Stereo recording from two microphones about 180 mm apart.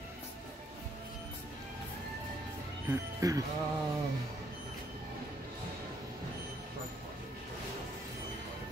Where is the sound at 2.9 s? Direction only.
20° right (ahead or behind).